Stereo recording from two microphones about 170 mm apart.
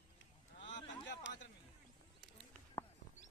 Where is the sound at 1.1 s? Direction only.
90° left.